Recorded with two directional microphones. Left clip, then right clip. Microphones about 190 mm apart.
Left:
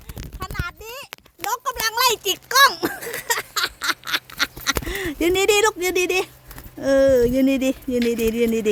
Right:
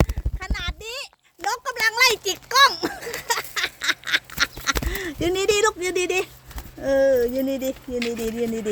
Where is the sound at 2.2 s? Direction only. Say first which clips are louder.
Left 1 dB; 30° left (ahead or behind).